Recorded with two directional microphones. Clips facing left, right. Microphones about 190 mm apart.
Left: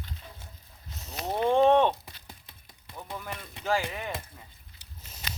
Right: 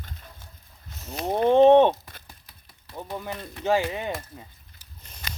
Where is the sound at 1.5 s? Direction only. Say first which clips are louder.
Right 6 dB; 20° right (ahead or behind).